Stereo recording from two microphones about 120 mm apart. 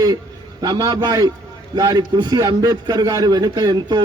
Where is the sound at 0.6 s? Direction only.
35° right (ahead or behind).